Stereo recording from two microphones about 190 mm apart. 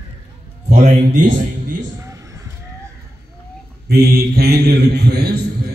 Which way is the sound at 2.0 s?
15° right (ahead or behind).